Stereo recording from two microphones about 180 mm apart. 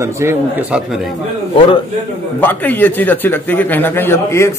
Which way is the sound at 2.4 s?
10° left (ahead or behind).